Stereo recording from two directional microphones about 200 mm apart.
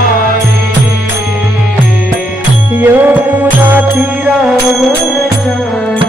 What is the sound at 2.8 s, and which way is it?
Music, 10° right (ahead or behind).